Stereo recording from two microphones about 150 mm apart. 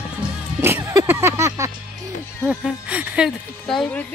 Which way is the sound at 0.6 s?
15° right (ahead or behind).